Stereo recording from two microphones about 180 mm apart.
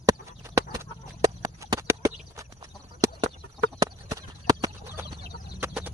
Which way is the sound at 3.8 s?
20° right (ahead or behind).